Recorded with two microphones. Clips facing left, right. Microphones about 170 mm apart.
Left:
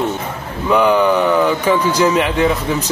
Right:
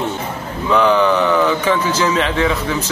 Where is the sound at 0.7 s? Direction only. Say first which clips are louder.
Left 1 dB; 10° left (ahead or behind).